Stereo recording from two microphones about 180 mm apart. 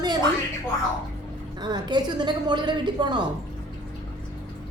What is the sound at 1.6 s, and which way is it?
A woman's voice, 25° right (ahead or behind).